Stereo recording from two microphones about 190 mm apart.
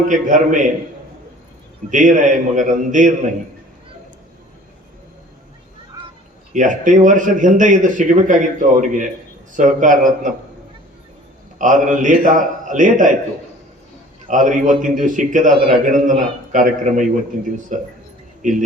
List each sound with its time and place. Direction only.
0.1 s speech: 40° right (ahead or behind)
1.9 s speech: 40° right (ahead or behind)
6.5 s a man's voice: 40° right (ahead or behind)
11.5 s a man's voice: 40° right (ahead or behind)
14.3 s speech: 40° right (ahead or behind)